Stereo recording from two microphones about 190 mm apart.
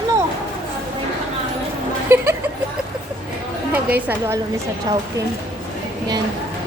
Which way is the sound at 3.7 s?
10° right (ahead or behind).